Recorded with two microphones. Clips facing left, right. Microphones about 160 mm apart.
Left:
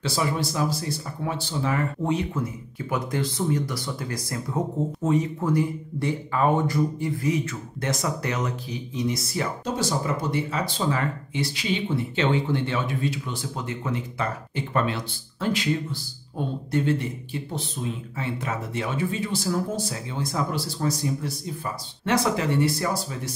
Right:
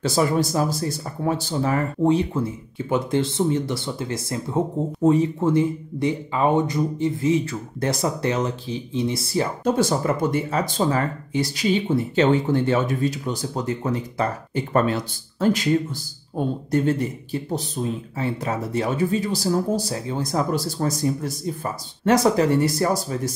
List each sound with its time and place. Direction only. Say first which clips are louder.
0.0 s speech: right 6 dB; 45° right (ahead or behind); by 9.5 s 30° right (ahead or behind)
9.8 s speech: right 4 dB; 50° right (ahead or behind)